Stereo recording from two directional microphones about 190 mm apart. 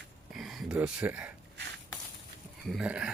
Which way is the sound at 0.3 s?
Centre (ahead or behind).